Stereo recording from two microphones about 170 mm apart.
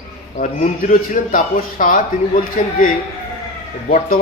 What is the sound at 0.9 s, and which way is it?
A man's voice, 50° left (ahead or behind).